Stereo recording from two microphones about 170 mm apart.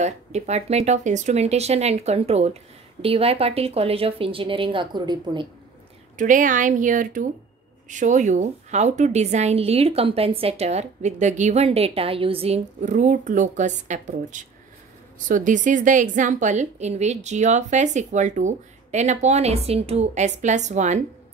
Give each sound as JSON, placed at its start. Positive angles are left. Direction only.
{"t": 0.0, "sound": "a woman's voice", "side_deg": -40}
{"t": 6.1, "sound": "a woman's voice", "side_deg": -50}